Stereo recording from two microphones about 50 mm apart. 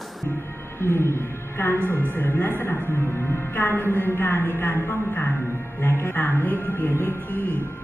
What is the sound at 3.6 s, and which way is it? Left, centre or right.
Speech, left.